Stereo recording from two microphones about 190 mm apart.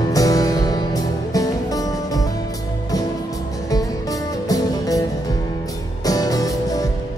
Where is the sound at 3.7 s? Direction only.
20° left (ahead or behind).